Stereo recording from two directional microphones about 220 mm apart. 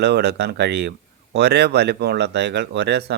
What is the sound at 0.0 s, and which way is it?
Speech, 50° right (ahead or behind).